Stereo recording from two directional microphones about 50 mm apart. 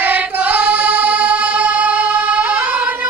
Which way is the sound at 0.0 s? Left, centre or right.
Right.